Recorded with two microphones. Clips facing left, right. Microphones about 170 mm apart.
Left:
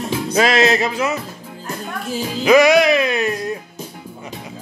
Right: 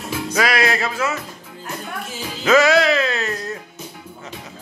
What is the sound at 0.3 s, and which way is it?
Music, 25° left (ahead or behind).